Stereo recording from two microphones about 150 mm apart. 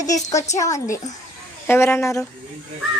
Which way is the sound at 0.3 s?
20° left (ahead or behind).